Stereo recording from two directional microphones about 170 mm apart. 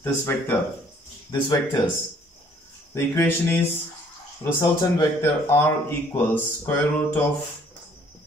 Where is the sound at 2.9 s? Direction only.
15° left (ahead or behind).